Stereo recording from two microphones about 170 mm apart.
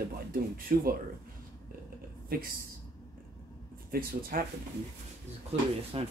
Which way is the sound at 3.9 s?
60° right (ahead or behind).